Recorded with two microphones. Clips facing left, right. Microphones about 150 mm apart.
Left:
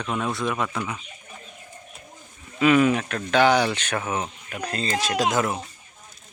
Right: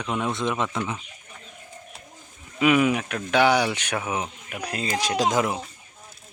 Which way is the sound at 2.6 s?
10° right (ahead or behind).